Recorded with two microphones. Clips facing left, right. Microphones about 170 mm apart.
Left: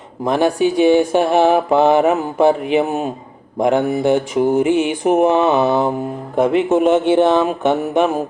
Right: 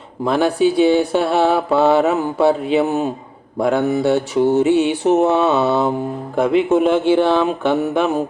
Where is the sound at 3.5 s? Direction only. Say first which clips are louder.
Left 1 dB; 15° left (ahead or behind).